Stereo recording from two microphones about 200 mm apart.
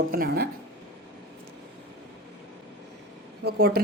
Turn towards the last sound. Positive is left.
turn(degrees=-50)  # may be behind; listen again after turning